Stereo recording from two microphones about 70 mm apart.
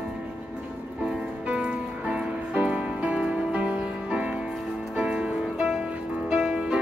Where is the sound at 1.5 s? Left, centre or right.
Centre.